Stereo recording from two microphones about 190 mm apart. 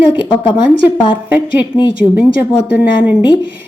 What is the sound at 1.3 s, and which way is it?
Speech, 10° right (ahead or behind).